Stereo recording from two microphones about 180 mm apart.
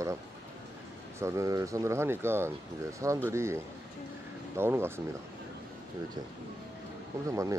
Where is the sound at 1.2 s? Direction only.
15° right (ahead or behind).